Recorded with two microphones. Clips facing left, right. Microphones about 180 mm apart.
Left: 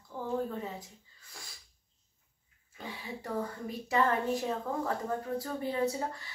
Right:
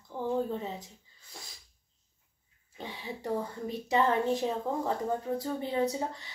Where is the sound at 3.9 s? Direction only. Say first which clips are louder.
Right 2 dB; 25° right (ahead or behind).